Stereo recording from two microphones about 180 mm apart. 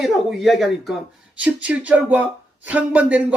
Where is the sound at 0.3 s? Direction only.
Centre (ahead or behind).